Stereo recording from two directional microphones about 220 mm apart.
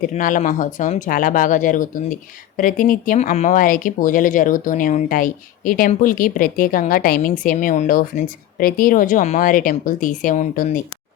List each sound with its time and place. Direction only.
0.0 s speech: 40° left (ahead or behind)